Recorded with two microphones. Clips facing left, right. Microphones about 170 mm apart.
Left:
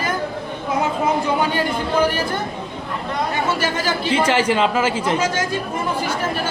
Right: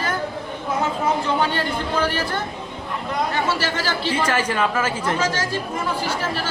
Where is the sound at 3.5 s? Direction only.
15° left (ahead or behind).